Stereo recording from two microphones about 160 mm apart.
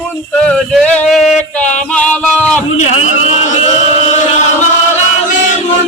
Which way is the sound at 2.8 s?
45° left (ahead or behind).